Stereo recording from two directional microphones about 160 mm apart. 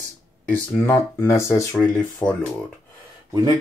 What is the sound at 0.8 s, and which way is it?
Speech, 15° left (ahead or behind).